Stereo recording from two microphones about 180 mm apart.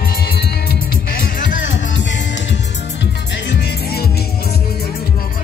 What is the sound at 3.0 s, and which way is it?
Music, 75° left (ahead or behind).